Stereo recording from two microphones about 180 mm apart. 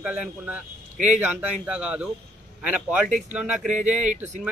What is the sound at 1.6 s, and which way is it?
Speech, 5° right (ahead or behind).